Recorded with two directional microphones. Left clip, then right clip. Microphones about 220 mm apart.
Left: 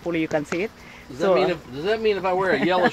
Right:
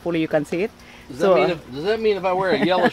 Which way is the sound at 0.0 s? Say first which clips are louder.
Right 3 dB; 30° right (ahead or behind).